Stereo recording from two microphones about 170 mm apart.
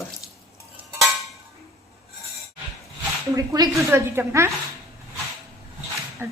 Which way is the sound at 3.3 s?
20° right (ahead or behind).